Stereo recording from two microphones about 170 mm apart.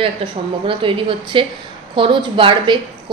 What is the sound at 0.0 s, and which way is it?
A woman's voice, 30° right (ahead or behind).